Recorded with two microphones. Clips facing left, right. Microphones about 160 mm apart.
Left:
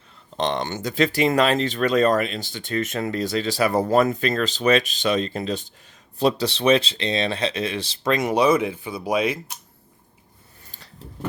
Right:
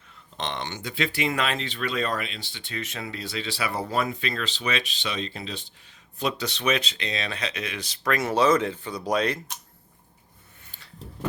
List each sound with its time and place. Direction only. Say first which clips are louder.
0.3 s speech: left 8 dB; 40° left (ahead or behind)
6.1 s speech: left 8 dB; 35° left (ahead or behind); by 9.6 s 10° left (ahead or behind)